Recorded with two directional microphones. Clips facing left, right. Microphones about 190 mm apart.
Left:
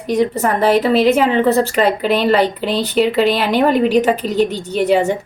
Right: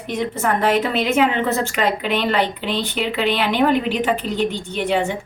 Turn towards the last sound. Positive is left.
turn(degrees=40)  # may be behind; listen again after turning